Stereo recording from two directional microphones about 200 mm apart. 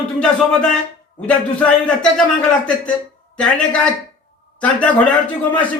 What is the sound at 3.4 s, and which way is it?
A man's voice, 5° left (ahead or behind).